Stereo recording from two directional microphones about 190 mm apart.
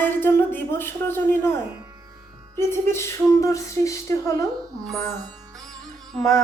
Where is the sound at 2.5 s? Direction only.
15° left (ahead or behind).